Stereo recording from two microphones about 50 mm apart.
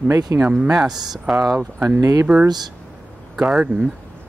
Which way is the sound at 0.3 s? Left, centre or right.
Right.